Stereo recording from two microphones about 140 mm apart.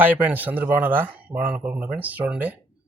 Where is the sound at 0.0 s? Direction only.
10° right (ahead or behind).